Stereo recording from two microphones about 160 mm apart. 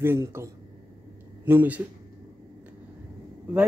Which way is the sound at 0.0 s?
15° right (ahead or behind).